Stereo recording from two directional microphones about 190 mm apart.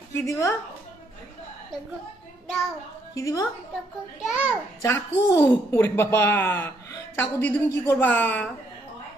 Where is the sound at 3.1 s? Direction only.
15° left (ahead or behind).